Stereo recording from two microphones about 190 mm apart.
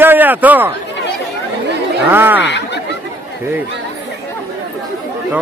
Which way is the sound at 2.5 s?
65° left (ahead or behind).